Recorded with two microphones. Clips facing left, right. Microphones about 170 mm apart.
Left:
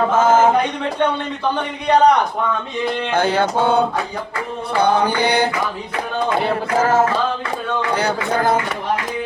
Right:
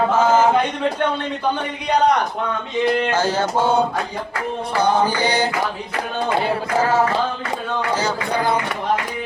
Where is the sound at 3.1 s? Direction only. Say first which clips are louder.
Left 2 dB; 60° left (ahead or behind).